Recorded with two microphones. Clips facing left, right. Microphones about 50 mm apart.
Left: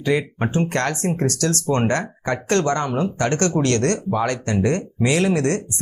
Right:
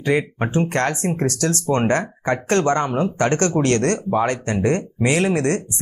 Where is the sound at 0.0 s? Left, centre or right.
Right.